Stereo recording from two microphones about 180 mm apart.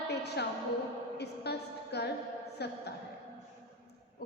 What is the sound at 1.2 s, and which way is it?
A woman's voice, 65° left (ahead or behind).